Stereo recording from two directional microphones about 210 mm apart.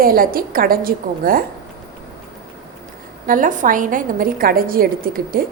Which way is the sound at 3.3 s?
40° right (ahead or behind).